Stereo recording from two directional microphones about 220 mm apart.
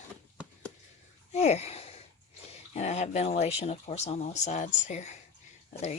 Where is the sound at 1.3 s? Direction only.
30° left (ahead or behind).